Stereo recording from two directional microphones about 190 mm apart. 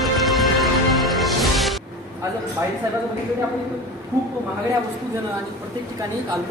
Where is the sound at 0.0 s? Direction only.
Centre (ahead or behind).